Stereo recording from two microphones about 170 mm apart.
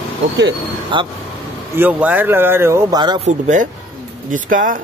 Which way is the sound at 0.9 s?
30° right (ahead or behind).